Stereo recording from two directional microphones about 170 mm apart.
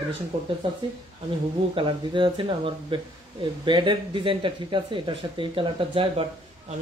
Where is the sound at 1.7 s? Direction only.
30° right (ahead or behind).